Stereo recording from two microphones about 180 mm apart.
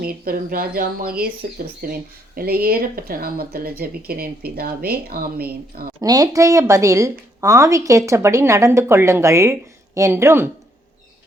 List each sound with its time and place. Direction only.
0.0 s speech: 55° right (ahead or behind)
6.0 s a woman's voice: 20° right (ahead or behind)